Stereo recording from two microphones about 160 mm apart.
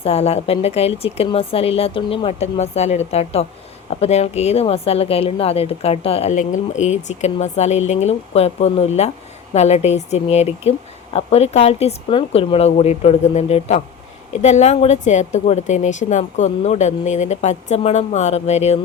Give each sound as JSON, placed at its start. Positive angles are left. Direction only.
{"t": 0.0, "sound": "speech", "side_deg": 40}
{"t": 6.3, "sound": "speech", "side_deg": 50}